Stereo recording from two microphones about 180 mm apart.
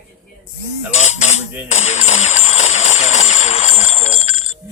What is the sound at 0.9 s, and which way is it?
Speech, 40° left (ahead or behind).